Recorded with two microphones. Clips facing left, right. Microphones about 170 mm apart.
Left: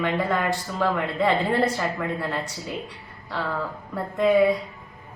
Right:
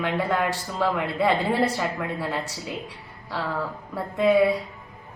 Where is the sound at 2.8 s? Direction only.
5° right (ahead or behind).